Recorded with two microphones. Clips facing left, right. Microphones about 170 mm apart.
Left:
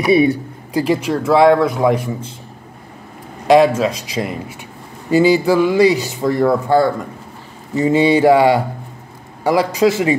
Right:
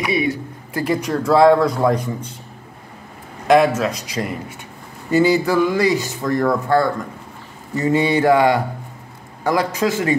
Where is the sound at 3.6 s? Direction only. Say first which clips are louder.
Left 4 dB; 20° left (ahead or behind).